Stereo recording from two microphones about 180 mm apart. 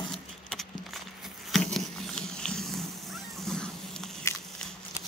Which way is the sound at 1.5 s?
5° left (ahead or behind).